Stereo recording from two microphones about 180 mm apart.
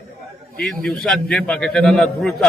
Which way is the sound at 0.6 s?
Centre (ahead or behind).